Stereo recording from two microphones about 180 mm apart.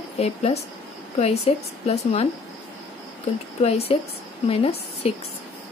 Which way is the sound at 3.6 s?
35° left (ahead or behind).